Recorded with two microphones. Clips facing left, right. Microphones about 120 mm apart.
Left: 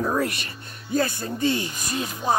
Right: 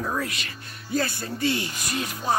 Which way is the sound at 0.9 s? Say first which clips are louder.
Left 3 dB; 20° left (ahead or behind).